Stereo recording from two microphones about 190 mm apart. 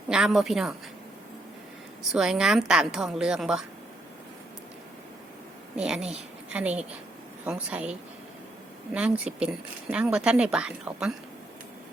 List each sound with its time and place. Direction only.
0.1 s a woman's voice: centre (ahead or behind)
2.0 s a woman's voice: 5° right (ahead or behind)
5.7 s a woman's voice: 5° right (ahead or behind)
8.9 s a woman's voice: 5° right (ahead or behind)